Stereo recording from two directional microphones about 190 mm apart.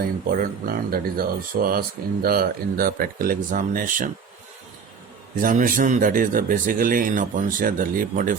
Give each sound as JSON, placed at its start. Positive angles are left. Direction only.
{"t": 0.3, "sound": "speech", "side_deg": -50}
{"t": 5.4, "sound": "speech", "side_deg": -45}